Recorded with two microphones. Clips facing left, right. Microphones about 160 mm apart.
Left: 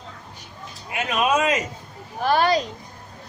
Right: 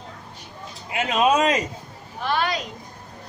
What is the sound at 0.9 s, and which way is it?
Speech, 25° right (ahead or behind).